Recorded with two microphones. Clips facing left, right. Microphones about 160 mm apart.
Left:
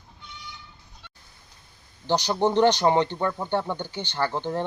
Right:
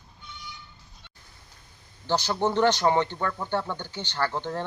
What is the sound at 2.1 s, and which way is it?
Speech, 15° left (ahead or behind).